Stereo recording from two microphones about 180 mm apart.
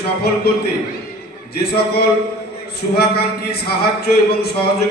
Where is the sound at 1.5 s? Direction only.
60° left (ahead or behind).